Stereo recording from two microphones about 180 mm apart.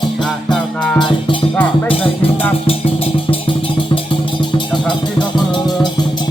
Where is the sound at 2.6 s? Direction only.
30° left (ahead or behind).